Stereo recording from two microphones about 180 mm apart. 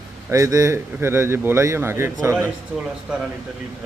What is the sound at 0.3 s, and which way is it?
A man's voice, 15° right (ahead or behind).